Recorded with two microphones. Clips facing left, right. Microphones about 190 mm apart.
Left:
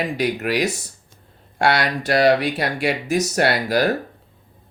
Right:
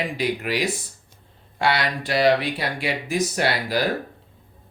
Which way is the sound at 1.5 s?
45° left (ahead or behind).